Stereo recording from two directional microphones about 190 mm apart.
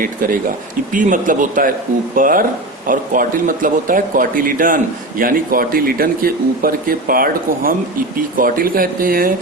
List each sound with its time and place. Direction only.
0.0 s speech: 45° right (ahead or behind)